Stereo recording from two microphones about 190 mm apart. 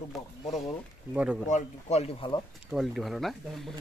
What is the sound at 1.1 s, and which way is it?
Speech, 5° right (ahead or behind).